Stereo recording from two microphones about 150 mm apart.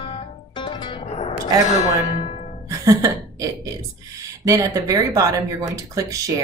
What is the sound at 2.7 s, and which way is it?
A woman's voice, 20° right (ahead or behind).